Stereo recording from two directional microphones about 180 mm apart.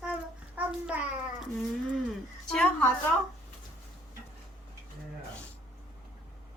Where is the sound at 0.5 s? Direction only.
10° right (ahead or behind).